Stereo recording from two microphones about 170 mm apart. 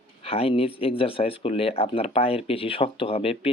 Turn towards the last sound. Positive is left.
turn(degrees=35)  # may be behind; listen again after turning